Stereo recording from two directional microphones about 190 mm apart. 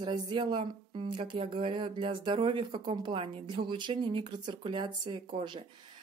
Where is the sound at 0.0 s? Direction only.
25° right (ahead or behind).